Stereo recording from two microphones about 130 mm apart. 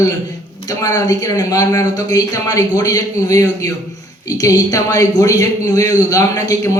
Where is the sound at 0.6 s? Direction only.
30° left (ahead or behind).